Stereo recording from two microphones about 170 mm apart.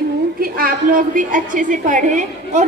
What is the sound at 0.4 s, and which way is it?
A woman's voice, 55° right (ahead or behind).